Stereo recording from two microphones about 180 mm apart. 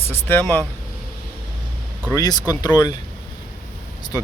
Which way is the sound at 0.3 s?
10° left (ahead or behind).